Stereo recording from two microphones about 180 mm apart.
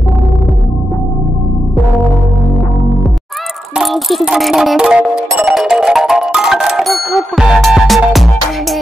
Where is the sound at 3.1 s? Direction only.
Centre (ahead or behind).